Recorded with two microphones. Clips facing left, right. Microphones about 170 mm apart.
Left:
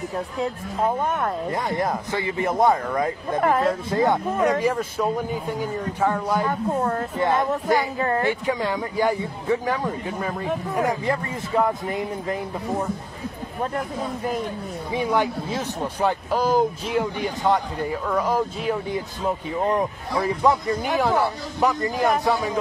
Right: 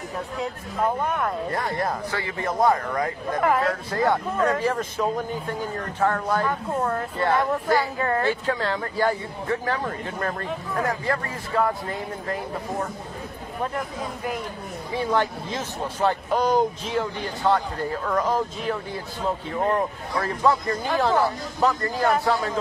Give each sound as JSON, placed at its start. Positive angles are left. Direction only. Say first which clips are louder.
{"t": 1.0, "sound": "a man's voice", "louder": "left 1 dB", "side_deg": 25}
{"t": 14.9, "sound": "speech", "louder": "left 1 dB", "side_deg": 15}